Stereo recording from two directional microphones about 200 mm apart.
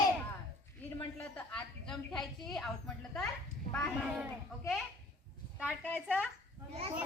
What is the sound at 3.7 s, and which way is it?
Speech, centre (ahead or behind).